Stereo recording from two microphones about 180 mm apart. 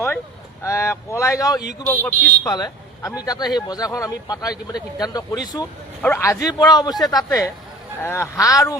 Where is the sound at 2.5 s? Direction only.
20° left (ahead or behind).